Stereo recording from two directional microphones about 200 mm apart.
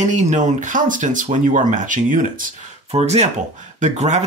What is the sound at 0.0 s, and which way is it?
Speech, 35° right (ahead or behind).